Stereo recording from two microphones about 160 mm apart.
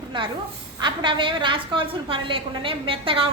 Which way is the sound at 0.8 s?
30° right (ahead or behind).